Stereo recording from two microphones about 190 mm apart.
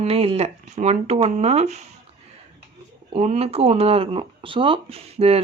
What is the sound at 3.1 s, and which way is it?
Speech, 35° right (ahead or behind).